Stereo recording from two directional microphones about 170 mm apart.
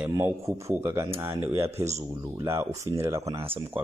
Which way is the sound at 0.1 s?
20° right (ahead or behind).